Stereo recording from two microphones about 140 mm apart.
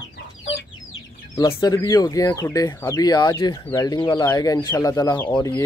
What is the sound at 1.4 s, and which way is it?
Speech, 25° left (ahead or behind).